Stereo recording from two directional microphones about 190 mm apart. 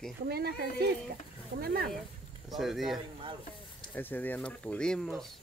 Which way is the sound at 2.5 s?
Centre (ahead or behind).